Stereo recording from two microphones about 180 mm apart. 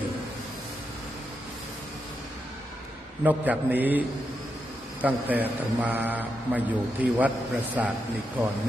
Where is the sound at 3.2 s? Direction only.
10° right (ahead or behind).